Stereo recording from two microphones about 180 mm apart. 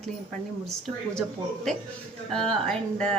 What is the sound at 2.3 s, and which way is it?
Speech, 5° left (ahead or behind).